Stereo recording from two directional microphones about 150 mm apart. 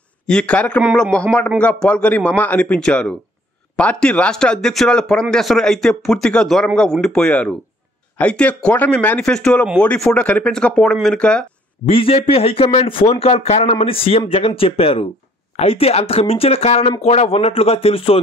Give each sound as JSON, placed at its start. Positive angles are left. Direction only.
{"t": 0.3, "sound": "speech", "side_deg": 5}
{"t": 11.8, "sound": "a man's voice", "side_deg": 40}